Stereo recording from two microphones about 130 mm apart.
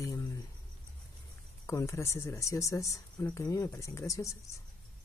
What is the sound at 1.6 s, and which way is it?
Speech, 25° left (ahead or behind).